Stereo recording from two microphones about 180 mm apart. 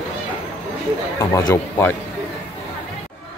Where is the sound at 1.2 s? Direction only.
20° left (ahead or behind).